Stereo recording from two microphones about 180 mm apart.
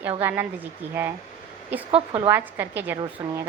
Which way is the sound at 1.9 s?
30° right (ahead or behind).